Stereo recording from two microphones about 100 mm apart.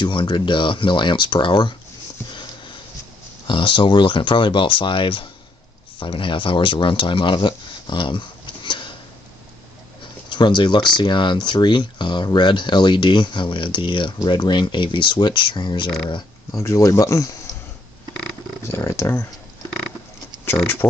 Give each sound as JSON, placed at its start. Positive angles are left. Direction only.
{"t": 0.0, "sound": "speech", "side_deg": 50}
{"t": 2.3, "sound": "sniff", "side_deg": 55}
{"t": 3.4, "sound": "speech", "side_deg": 55}
{"t": 10.3, "sound": "speech", "side_deg": 50}
{"t": 16.5, "sound": "speech", "side_deg": 30}
{"t": 18.6, "sound": "speech", "side_deg": 30}
{"t": 20.5, "sound": "speech", "side_deg": 20}